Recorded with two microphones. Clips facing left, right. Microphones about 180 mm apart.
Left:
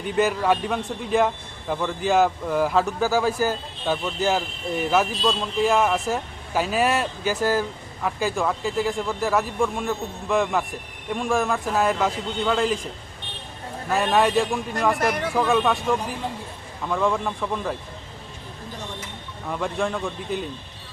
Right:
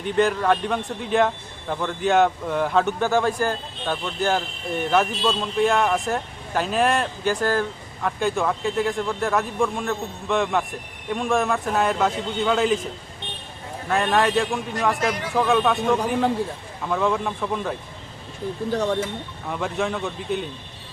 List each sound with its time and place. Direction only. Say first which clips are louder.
0.0 s a man's voice: right 1 dB; 5° left (ahead or behind)
13.9 s a man's voice: even; centre (ahead or behind)
16.0 s a man's voice: right 8 dB; 75° right (ahead or behind)
16.9 s a man's voice: right 1 dB; centre (ahead or behind)
18.7 s a man's voice: right 14 dB; 75° right (ahead or behind)
19.5 s a man's voice: even; centre (ahead or behind)